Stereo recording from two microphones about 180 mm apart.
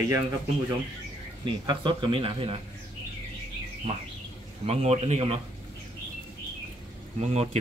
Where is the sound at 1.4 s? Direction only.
25° right (ahead or behind).